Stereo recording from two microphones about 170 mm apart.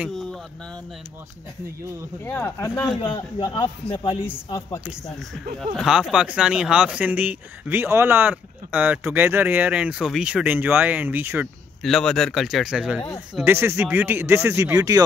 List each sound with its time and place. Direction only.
0.1 s a sound: centre (ahead or behind)
2.2 s speech: 15° left (ahead or behind)
3.0 s a man's voice: 30° left (ahead or behind)
4.8 s speech: centre (ahead or behind)
11.8 s speech: centre (ahead or behind); by 15.0 s 20° right (ahead or behind)